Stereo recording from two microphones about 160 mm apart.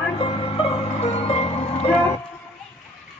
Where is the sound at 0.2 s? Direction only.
35° left (ahead or behind).